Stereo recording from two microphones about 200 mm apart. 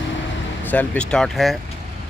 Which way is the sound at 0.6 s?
5° left (ahead or behind).